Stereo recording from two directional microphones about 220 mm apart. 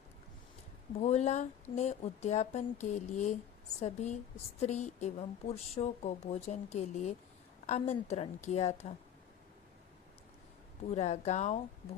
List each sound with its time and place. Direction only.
0.9 s a woman's voice: 30° left (ahead or behind)
10.9 s a woman's voice: 30° left (ahead or behind)